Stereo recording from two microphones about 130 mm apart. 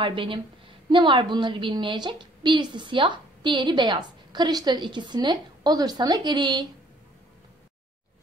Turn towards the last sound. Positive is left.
turn(degrees=-35)  # may be behind; listen again after turning